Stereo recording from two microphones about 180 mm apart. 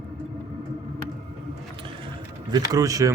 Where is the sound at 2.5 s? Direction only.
20° right (ahead or behind).